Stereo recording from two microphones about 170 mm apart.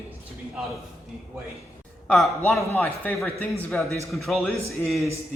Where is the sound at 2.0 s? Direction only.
5° left (ahead or behind).